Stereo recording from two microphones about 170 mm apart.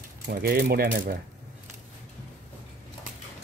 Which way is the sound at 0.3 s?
65° right (ahead or behind).